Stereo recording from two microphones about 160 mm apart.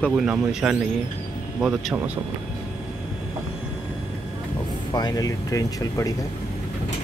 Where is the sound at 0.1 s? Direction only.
5° right (ahead or behind).